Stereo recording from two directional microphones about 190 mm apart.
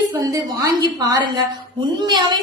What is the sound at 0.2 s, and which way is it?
A woman's voice, 15° right (ahead or behind).